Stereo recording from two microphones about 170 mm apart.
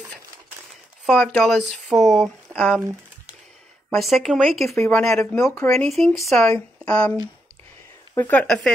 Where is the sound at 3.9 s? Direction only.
Centre (ahead or behind).